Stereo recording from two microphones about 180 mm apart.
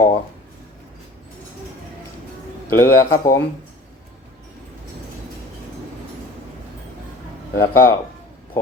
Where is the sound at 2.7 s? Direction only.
15° left (ahead or behind).